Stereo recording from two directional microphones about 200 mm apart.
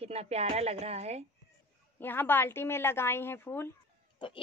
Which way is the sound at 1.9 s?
10° left (ahead or behind).